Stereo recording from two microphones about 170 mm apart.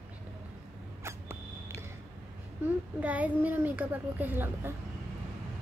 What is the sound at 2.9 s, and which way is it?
A child's voice, 10° right (ahead or behind).